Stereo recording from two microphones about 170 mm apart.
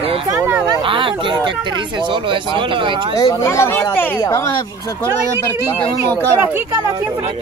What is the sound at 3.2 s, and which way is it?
Speech, 20° left (ahead or behind).